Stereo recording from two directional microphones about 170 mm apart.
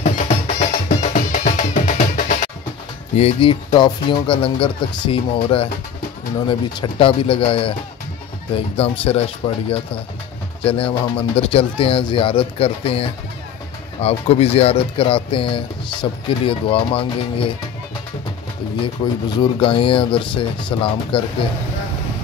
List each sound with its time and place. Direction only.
0.0 s music: 45° left (ahead or behind)
3.2 s speech: 35° left (ahead or behind)
18.8 s speech: 25° left (ahead or behind)